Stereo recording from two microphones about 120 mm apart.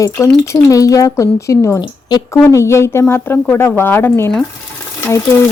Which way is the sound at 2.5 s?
25° left (ahead or behind).